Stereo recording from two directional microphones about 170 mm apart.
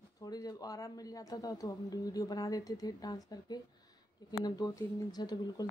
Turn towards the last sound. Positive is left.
turn(degrees=25)  # may be behind; listen again after turning